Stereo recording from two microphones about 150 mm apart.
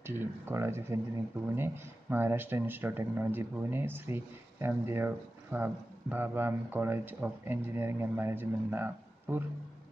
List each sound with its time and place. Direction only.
0.0 s speech: 15° right (ahead or behind)